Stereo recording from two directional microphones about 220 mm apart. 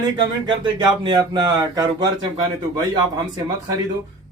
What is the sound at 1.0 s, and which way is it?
Speech, 20° right (ahead or behind).